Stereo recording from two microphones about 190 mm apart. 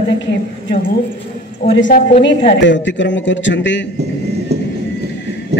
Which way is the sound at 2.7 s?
70° left (ahead or behind).